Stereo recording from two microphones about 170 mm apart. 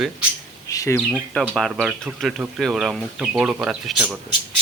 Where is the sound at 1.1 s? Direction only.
5° left (ahead or behind).